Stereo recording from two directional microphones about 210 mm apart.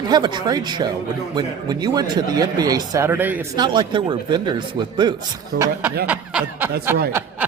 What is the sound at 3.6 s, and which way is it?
Speech, 20° right (ahead or behind).